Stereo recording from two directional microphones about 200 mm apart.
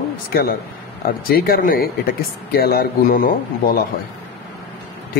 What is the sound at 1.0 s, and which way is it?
A man's voice, 45° left (ahead or behind).